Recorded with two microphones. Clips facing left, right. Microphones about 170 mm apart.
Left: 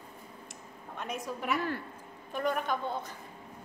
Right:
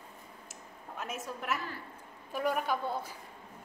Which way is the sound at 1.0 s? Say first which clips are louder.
Left 3 dB; 5° right (ahead or behind).